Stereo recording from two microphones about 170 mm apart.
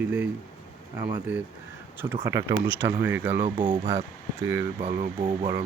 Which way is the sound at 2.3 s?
20° right (ahead or behind).